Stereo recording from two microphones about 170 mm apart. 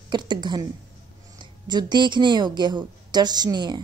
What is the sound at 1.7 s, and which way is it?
Speech, 25° right (ahead or behind).